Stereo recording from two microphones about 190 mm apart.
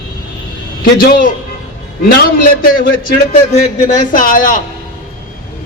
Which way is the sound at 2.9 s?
45° left (ahead or behind).